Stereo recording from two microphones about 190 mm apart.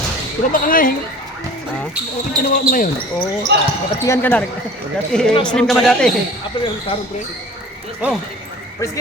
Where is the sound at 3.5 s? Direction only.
65° right (ahead or behind).